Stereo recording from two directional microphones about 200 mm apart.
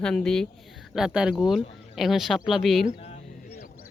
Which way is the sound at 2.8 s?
35° left (ahead or behind).